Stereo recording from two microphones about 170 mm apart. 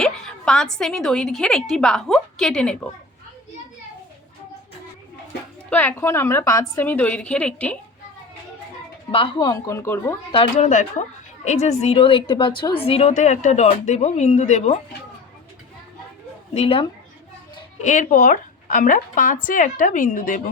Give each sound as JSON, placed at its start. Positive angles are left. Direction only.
{"t": 0.0, "sound": "a woman's voice", "side_deg": 5}
{"t": 5.7, "sound": "a woman's voice", "side_deg": 10}
{"t": 9.1, "sound": "speech", "side_deg": 30}
{"t": 10.3, "sound": "a woman's voice", "side_deg": 40}
{"t": 16.6, "sound": "speech", "side_deg": 35}
{"t": 17.7, "sound": "a woman's voice", "side_deg": 45}